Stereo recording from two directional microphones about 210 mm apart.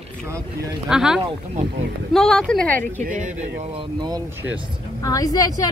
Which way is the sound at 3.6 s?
25° right (ahead or behind).